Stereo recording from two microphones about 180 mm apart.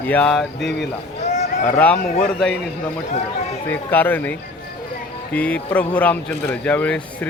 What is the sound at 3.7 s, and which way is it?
Speech, 10° left (ahead or behind).